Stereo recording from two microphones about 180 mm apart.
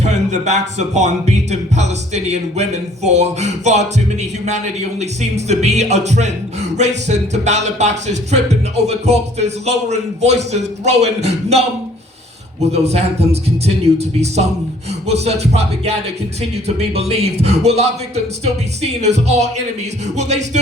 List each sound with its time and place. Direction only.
0.0 s speech: 40° right (ahead or behind)
5.5 s speech: 40° right (ahead or behind)
12.7 s speech: 35° right (ahead or behind)